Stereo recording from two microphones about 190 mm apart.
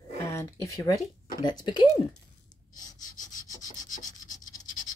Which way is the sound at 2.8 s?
20° left (ahead or behind).